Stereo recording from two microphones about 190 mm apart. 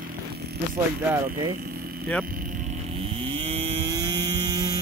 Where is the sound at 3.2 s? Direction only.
30° right (ahead or behind).